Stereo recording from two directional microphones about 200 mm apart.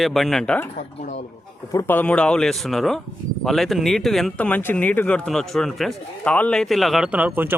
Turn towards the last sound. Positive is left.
turn(degrees=-10)  # may be behind; listen again after turning